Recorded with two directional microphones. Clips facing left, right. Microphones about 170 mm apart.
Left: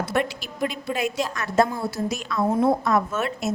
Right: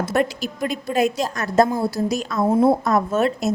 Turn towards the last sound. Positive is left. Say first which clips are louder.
# right 6 dB
turn(degrees=-35)  # may be behind; listen again after turning